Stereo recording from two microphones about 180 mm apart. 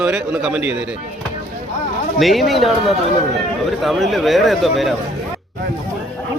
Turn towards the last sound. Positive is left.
turn(degrees=0)  # may be behind; listen again after turning